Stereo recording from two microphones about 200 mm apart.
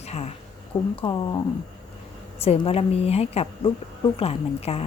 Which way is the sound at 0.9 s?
20° left (ahead or behind).